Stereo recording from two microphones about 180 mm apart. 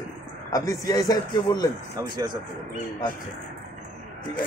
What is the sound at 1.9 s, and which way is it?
Speech, 20° right (ahead or behind).